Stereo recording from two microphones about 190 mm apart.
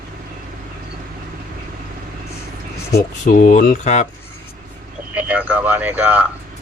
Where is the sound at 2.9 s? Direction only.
45° left (ahead or behind).